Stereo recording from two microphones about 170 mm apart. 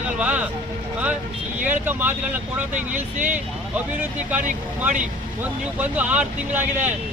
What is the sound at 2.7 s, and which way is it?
Speech, 50° right (ahead or behind).